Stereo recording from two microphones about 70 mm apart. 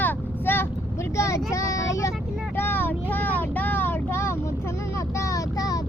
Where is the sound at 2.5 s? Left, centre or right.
Left.